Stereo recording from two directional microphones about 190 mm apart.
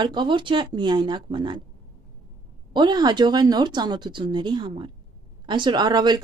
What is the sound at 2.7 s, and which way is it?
A woman's voice, 20° right (ahead or behind).